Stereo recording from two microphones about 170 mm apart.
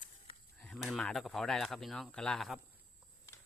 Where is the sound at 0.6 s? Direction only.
5° left (ahead or behind).